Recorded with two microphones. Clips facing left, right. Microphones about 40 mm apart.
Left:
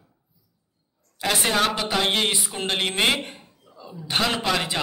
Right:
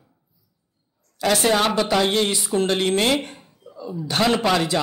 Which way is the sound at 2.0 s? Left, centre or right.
Left.